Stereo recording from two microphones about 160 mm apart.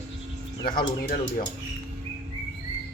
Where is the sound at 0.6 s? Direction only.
65° left (ahead or behind).